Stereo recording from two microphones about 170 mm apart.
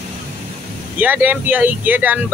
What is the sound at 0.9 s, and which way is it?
Speech, 10° right (ahead or behind).